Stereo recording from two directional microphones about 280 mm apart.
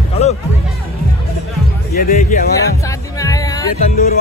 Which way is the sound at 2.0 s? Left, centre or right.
Left.